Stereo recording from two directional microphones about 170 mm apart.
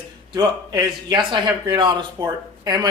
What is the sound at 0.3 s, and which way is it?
Speech, 25° right (ahead or behind).